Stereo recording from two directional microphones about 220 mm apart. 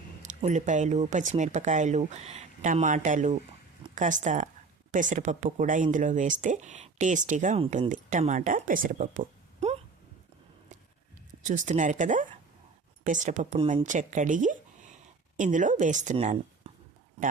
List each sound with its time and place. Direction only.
0.2 s speech: 35° right (ahead or behind)
11.4 s speech: 35° right (ahead or behind)
13.6 s speech: 25° right (ahead or behind)
13.8 s speech: 35° right (ahead or behind)